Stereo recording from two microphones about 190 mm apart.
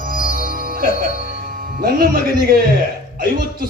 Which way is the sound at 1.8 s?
50° right (ahead or behind).